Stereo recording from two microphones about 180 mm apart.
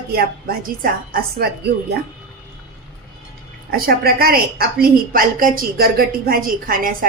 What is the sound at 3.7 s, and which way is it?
A woman's voice, 55° right (ahead or behind).